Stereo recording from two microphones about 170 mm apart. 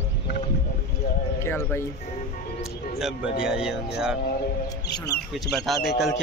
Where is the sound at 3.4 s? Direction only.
5° right (ahead or behind).